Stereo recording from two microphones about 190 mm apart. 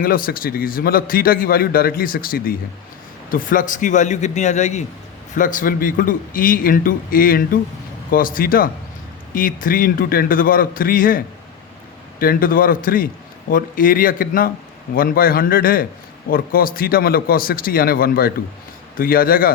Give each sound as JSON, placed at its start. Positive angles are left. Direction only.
{"t": 0.0, "sound": "a man's voice", "side_deg": 50}
{"t": 12.2, "sound": "a man's voice", "side_deg": 50}